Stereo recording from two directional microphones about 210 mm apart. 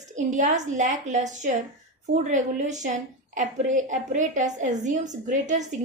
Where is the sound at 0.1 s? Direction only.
35° right (ahead or behind).